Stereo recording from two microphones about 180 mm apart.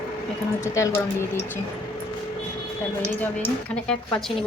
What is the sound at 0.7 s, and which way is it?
Speech, 15° left (ahead or behind).